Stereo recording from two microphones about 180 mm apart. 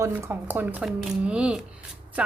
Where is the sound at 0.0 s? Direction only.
15° right (ahead or behind).